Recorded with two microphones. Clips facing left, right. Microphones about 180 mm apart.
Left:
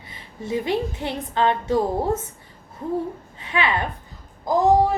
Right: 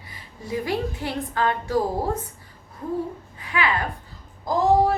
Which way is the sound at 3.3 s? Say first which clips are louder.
Left 1 dB; 25° left (ahead or behind).